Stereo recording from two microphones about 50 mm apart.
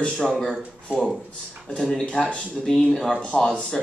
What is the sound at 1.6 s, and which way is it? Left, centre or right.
Speech, centre.